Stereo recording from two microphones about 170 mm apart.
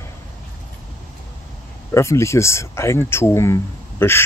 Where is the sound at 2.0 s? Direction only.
15° left (ahead or behind).